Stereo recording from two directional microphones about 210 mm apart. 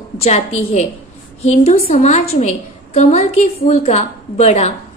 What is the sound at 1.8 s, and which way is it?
A woman's voice, 30° left (ahead or behind).